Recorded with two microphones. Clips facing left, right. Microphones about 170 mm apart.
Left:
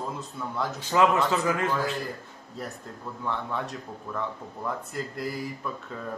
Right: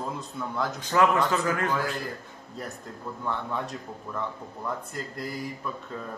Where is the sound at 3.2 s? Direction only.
Centre (ahead or behind).